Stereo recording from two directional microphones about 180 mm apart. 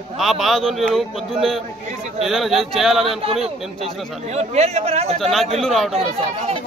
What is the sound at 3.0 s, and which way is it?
Speech, 35° right (ahead or behind).